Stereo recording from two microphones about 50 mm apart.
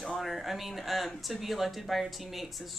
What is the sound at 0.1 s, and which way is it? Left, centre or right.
Speech, centre.